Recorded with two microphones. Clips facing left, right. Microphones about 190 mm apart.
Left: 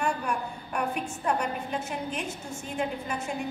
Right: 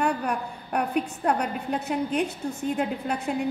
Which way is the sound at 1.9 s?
60° right (ahead or behind).